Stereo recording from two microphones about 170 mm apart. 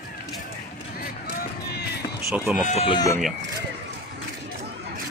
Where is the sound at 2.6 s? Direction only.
40° left (ahead or behind).